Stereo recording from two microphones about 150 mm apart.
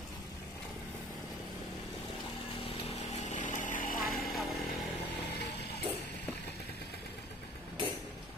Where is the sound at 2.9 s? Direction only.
50° left (ahead or behind).